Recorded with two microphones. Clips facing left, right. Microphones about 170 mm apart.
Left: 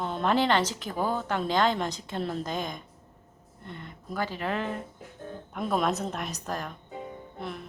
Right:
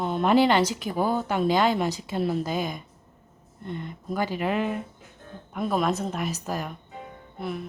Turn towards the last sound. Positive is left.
turn(degrees=-5)  # may be behind; listen again after turning